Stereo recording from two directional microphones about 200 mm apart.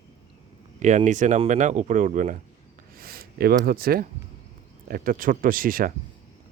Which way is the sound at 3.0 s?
50° right (ahead or behind).